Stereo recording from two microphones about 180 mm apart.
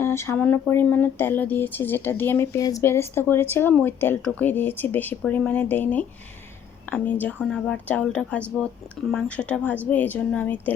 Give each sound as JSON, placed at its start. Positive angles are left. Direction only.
{"t": 0.0, "sound": "speech", "side_deg": 15}